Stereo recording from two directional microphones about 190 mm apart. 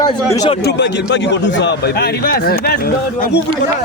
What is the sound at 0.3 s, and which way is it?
Speech, 20° left (ahead or behind).